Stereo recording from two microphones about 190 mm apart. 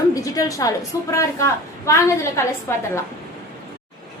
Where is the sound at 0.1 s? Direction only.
20° left (ahead or behind).